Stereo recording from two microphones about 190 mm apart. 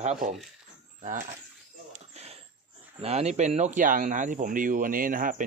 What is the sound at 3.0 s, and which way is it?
Speech, 35° right (ahead or behind).